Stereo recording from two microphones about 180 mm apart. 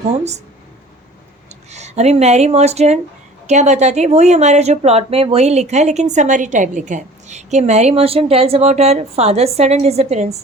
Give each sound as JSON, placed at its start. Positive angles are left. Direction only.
{"t": 1.5, "sound": "a woman's voice", "side_deg": -40}